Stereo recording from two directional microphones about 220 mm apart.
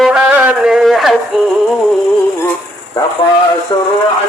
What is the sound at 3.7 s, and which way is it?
Speech, 20° left (ahead or behind).